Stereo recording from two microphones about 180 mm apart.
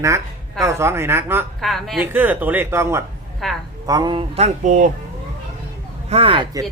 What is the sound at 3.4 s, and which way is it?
Speech, centre (ahead or behind).